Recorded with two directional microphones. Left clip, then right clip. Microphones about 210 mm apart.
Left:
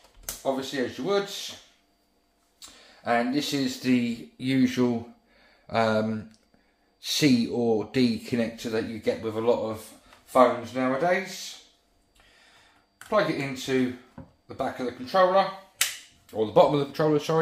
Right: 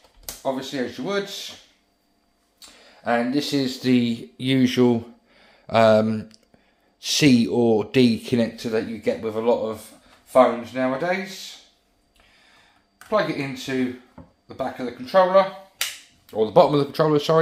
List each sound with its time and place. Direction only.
0.4 s speech: 35° right (ahead or behind)
3.0 s speech: 40° right (ahead or behind)
14.2 s a sound: 5° right (ahead or behind)
14.5 s speech: 30° right (ahead or behind)